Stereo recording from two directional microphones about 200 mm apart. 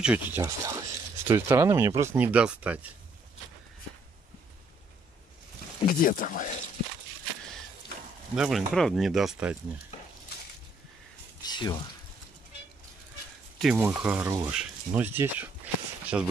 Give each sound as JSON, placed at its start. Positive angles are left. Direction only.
{"t": 0.0, "sound": "speech", "side_deg": -5}
{"t": 5.9, "sound": "speech", "side_deg": 45}
{"t": 8.4, "sound": "speech", "side_deg": 0}
{"t": 11.4, "sound": "pour", "side_deg": 20}
{"t": 13.6, "sound": "speech", "side_deg": -5}